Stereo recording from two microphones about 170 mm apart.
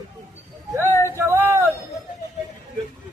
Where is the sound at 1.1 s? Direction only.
15° right (ahead or behind).